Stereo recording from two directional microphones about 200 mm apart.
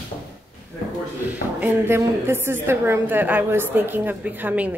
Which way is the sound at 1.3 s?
10° right (ahead or behind).